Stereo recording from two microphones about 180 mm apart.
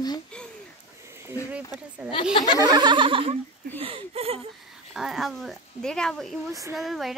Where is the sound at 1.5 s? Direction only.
5° right (ahead or behind).